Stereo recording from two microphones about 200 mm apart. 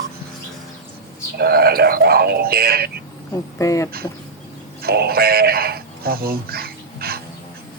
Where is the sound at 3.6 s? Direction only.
15° left (ahead or behind).